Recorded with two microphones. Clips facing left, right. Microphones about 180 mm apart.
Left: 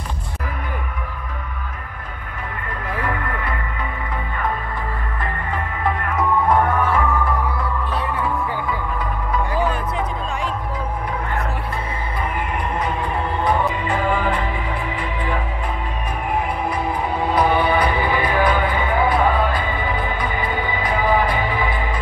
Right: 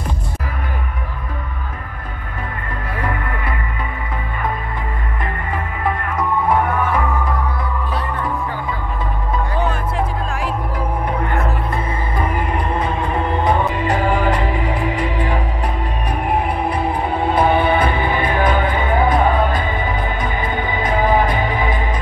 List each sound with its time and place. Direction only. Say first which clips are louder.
13.8 s music: right 3 dB; 85° right
16.3 s music: right 3 dB; 60° right (ahead or behind)
17.3 s music: right 2 dB; 25° right (ahead or behind)